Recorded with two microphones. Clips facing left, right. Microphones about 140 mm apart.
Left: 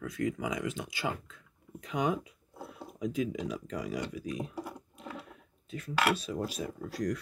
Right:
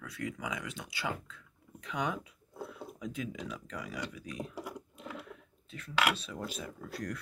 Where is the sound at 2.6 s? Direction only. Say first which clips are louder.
Left 7 dB; 35° left (ahead or behind).